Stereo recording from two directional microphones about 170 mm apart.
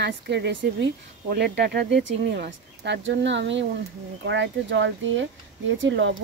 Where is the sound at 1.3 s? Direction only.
75° right (ahead or behind).